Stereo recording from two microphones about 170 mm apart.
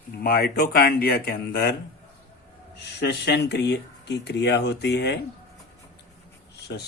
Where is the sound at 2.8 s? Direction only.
75° left (ahead or behind).